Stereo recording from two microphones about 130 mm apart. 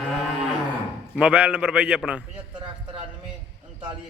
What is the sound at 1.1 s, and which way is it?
A man's voice, 10° right (ahead or behind).